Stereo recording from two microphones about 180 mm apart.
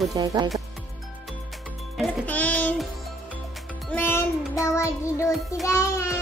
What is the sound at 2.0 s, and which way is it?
Music, 10° left (ahead or behind).